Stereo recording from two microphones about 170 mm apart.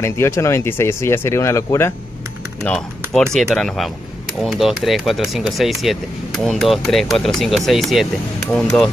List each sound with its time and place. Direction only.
0.0 s speech: 15° left (ahead or behind)
2.6 s speech: 5° left (ahead or behind)